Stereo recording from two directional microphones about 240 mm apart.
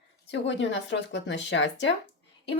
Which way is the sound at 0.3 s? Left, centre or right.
Left.